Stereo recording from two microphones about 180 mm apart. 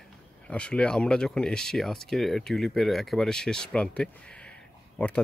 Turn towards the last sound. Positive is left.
turn(degrees=10)  # may be behind; listen again after turning